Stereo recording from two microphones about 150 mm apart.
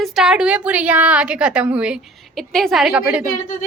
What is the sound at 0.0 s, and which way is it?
A woman's voice, 5° right (ahead or behind).